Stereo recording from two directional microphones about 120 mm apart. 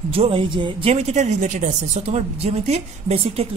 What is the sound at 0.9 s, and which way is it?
A woman's voice, 65° right (ahead or behind).